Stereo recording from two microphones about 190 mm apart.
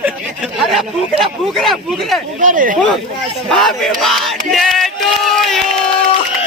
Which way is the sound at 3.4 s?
Centre (ahead or behind).